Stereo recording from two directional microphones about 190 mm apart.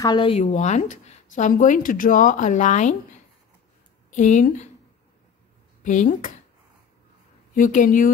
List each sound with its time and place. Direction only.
0.0 s speech: 25° left (ahead or behind); by 3.0 s 40° left (ahead or behind)
4.1 s speech: 40° left (ahead or behind)
5.9 s speech: 40° left (ahead or behind)
7.5 s speech: 45° left (ahead or behind)